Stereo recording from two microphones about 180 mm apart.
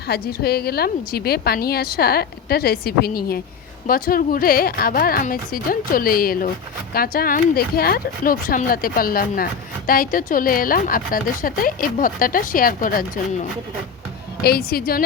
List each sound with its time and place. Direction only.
0.1 s a woman's voice: 60° left (ahead or behind)
14.4 s a woman's voice: 60° left (ahead or behind)